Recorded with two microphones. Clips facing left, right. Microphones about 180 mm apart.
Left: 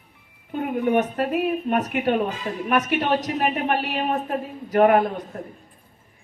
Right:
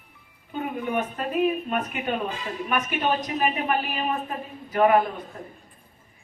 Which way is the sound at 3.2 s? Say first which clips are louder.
Left 2 dB; 75° left (ahead or behind).